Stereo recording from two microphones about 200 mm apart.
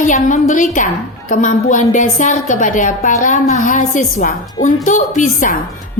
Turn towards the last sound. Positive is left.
turn(degrees=40)  # may be behind; listen again after turning